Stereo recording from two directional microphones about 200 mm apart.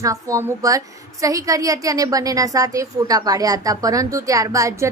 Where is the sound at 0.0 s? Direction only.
15° right (ahead or behind).